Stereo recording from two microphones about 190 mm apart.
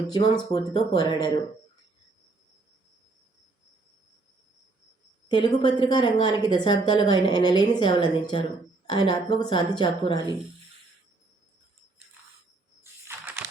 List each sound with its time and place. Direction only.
0.1 s a woman's voice: 25° left (ahead or behind)
5.3 s a woman's voice: 25° left (ahead or behind)
13.4 s typing: 5° right (ahead or behind)